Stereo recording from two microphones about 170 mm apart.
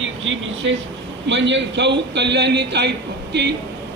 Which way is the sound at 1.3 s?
90° right.